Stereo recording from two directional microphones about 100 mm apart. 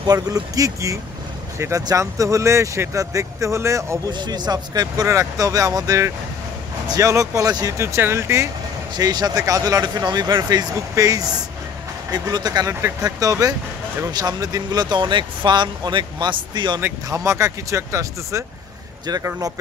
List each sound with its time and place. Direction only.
0.0 s speech: 40° right (ahead or behind)
4.1 s speech: 45° right (ahead or behind); by 8.5 s 25° right (ahead or behind)
8.9 s speech: 40° right (ahead or behind)
17.1 s speech: 30° right (ahead or behind)